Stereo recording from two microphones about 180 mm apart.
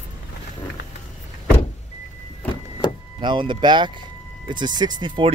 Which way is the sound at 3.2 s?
25° right (ahead or behind).